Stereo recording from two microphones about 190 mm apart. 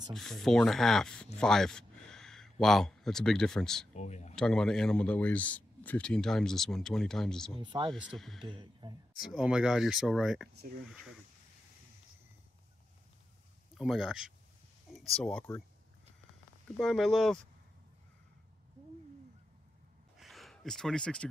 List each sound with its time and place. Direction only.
0.1 s speech: centre (ahead or behind)
3.9 s speech: 35° left (ahead or behind)
4.4 s speech: 5° left (ahead or behind)
7.5 s speech: 25° right (ahead or behind)
7.9 s speech: centre (ahead or behind)
8.4 s speech: 25° right (ahead or behind)
9.3 s speech: 5° right (ahead or behind)
13.7 s speech: 5° right (ahead or behind)
16.7 s speech: centre (ahead or behind)
20.2 s a sound: centre (ahead or behind)